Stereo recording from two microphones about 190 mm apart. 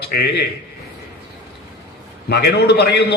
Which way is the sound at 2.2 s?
60° left (ahead or behind).